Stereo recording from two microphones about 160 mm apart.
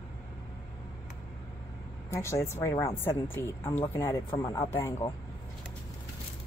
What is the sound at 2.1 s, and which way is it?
Speech, 15° left (ahead or behind).